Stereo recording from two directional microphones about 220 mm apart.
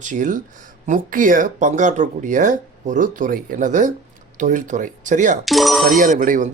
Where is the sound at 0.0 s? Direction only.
35° right (ahead or behind).